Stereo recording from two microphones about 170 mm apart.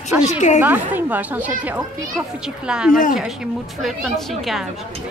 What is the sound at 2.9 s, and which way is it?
Speech, 50° left (ahead or behind).